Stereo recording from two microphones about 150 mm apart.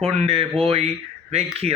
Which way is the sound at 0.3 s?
40° right (ahead or behind).